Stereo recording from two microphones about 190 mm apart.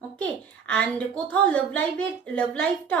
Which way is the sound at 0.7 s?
5° left (ahead or behind).